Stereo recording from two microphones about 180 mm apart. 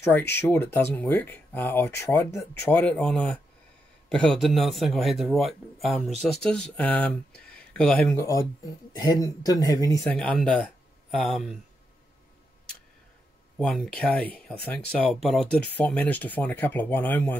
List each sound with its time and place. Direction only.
0.3 s speech: 10° left (ahead or behind)
10.0 s speech: 5° left (ahead or behind)
13.6 s speech: 5° left (ahead or behind)